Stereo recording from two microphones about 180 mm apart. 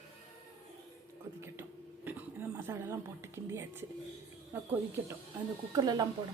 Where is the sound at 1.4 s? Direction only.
15° right (ahead or behind).